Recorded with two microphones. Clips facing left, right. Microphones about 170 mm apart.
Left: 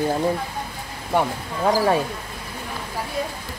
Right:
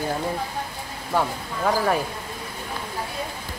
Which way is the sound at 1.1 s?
20° left (ahead or behind).